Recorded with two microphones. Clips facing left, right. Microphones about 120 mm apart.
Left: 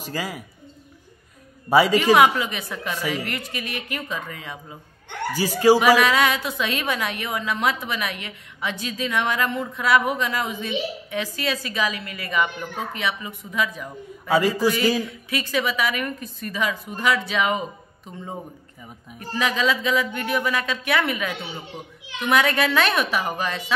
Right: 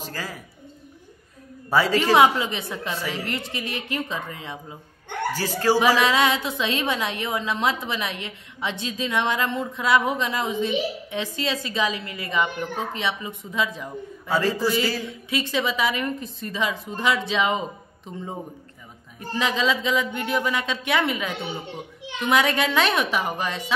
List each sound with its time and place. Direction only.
0.0 s a woman's voice: 15° left (ahead or behind)
1.7 s a woman's voice: 15° left (ahead or behind)
2.1 s a woman's voice: 25° right (ahead or behind)
3.0 s a woman's voice: 15° left (ahead or behind)
3.3 s a woman's voice: 25° right (ahead or behind)
5.3 s a woman's voice: 10° left (ahead or behind)
5.9 s a woman's voice: 25° right (ahead or behind)
14.8 s a woman's voice: 15° left (ahead or behind)
15.0 s a woman's voice: 25° right (ahead or behind)
19.1 s a woman's voice: 25° right (ahead or behind)